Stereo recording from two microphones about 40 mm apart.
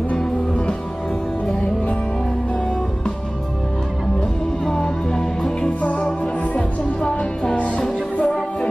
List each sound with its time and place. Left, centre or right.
0.1 s music: left
4.8 s music: centre
5.8 s music: left
7.5 s music: left
7.8 s music: left